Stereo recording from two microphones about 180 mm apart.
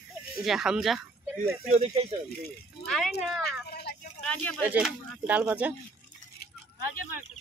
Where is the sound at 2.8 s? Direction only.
Centre (ahead or behind).